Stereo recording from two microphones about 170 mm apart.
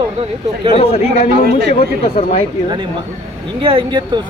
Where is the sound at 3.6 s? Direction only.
30° right (ahead or behind).